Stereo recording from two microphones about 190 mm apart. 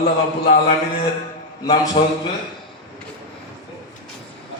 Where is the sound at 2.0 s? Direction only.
30° left (ahead or behind).